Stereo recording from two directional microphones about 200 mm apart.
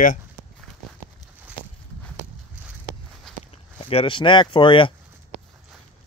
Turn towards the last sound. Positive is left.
turn(degrees=25)  # may be behind; listen again after turning